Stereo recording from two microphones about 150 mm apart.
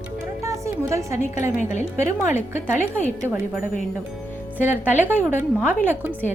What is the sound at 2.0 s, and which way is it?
A woman's voice, 15° right (ahead or behind).